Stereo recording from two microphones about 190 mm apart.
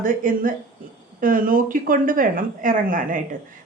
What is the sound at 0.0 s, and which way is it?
Speech, 45° right (ahead or behind).